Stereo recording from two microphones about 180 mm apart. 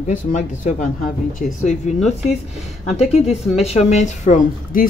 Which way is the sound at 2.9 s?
35° left (ahead or behind).